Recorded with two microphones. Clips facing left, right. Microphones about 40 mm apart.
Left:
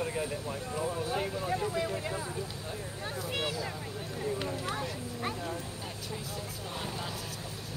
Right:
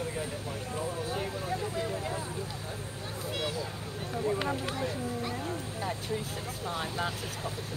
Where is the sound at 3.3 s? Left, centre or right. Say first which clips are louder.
Even; left.